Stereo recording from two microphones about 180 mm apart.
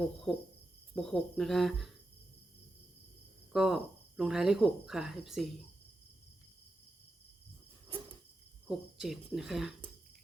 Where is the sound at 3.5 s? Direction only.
5° right (ahead or behind).